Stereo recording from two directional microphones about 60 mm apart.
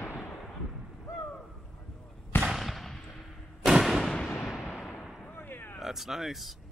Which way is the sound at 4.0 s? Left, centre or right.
Centre.